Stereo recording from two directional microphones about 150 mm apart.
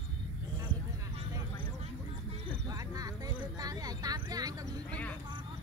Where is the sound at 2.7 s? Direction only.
25° right (ahead or behind).